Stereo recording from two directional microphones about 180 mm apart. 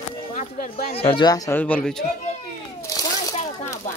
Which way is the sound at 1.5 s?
5° left (ahead or behind).